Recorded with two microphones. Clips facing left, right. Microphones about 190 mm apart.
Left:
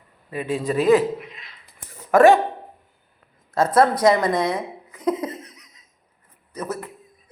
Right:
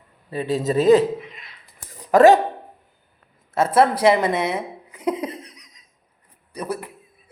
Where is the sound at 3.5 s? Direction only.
25° right (ahead or behind).